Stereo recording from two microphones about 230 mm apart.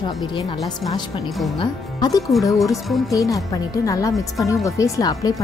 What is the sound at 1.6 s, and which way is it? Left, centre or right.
Speech, centre.